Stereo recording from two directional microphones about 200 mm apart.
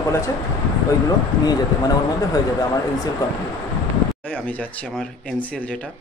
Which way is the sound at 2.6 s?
15° left (ahead or behind).